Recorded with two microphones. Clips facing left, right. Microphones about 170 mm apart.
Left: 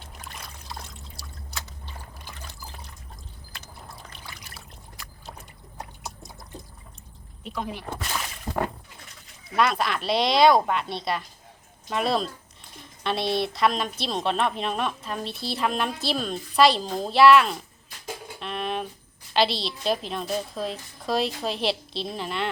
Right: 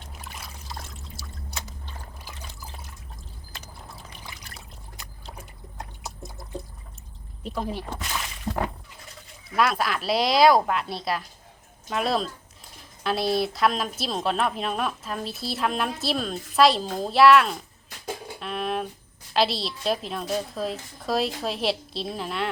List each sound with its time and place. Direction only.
0.3 s pour: 5° right (ahead or behind)
7.4 s speech: 35° right (ahead or behind)
9.6 s a woman's voice: centre (ahead or behind)
18.3 s a sound: centre (ahead or behind)
19.3 s a woman's voice: centre (ahead or behind)